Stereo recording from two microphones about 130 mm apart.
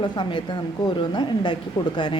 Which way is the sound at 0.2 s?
40° left (ahead or behind).